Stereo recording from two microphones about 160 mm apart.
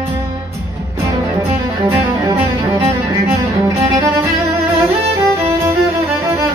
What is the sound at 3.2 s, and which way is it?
Music, 15° right (ahead or behind).